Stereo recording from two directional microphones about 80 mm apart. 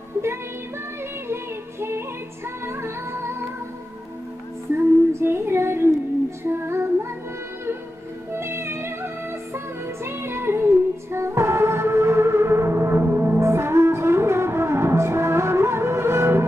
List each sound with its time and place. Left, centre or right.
1.3 s music: right
4.7 s female singing: right
8.3 s music: right